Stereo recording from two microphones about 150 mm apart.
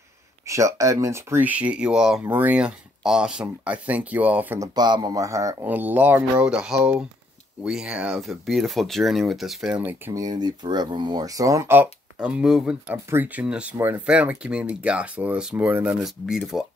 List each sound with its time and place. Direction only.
0.5 s speech: 20° right (ahead or behind)
4.7 s speech: 30° right (ahead or behind)
5.7 s speech: 10° right (ahead or behind)
10.2 s speech: 30° right (ahead or behind); by 12.9 s 5° right (ahead or behind)
12.9 s speech: 15° right (ahead or behind)